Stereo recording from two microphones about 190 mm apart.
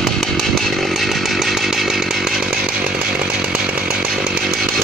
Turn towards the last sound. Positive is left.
turn(degrees=-5)  # may be behind; listen again after turning